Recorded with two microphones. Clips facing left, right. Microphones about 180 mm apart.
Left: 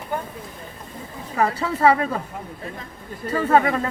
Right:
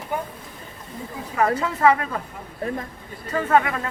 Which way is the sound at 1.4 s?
35° left (ahead or behind).